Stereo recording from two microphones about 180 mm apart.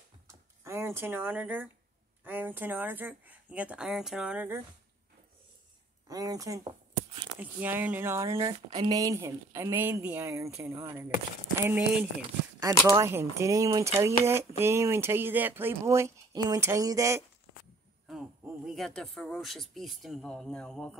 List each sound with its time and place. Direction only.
0.7 s speech: 15° right (ahead or behind)
6.0 s speech: 20° right (ahead or behind)
7.2 s speech: 10° right (ahead or behind)
18.7 s speech: centre (ahead or behind)